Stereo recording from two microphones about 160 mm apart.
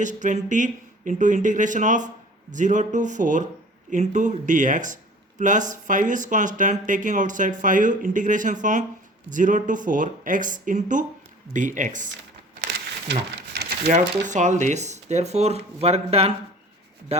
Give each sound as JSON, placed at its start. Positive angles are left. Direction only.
{"t": 0.0, "sound": "speech", "side_deg": -50}
{"t": 13.1, "sound": "patter", "side_deg": -90}
{"t": 14.3, "sound": "speech", "side_deg": -50}